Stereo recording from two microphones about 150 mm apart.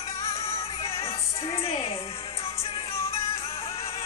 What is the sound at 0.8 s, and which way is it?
Music, 40° left (ahead or behind).